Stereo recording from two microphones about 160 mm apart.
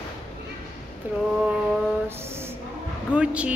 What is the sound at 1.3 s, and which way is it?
Speech, 5° right (ahead or behind).